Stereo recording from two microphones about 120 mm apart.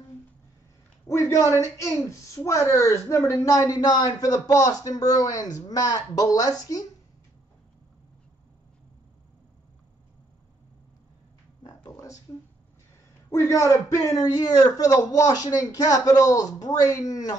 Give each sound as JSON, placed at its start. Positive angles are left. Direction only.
{"t": 1.0, "sound": "a woman's voice", "side_deg": 25}
{"t": 11.6, "sound": "a sound", "side_deg": 30}
{"t": 13.3, "sound": "a woman's voice", "side_deg": 25}